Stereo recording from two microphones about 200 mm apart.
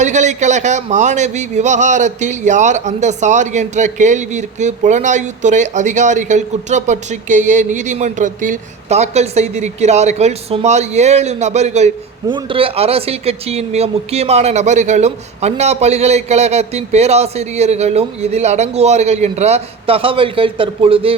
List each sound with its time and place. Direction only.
0.0 s speech: 35° right (ahead or behind)